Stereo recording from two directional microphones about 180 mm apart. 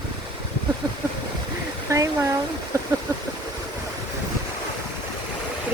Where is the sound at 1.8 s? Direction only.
20° right (ahead or behind).